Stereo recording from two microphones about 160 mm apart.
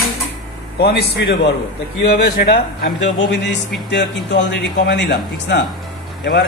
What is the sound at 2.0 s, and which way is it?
Speech, 75° left (ahead or behind).